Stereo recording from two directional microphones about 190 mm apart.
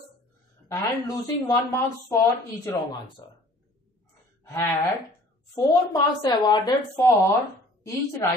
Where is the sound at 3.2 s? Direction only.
20° left (ahead or behind).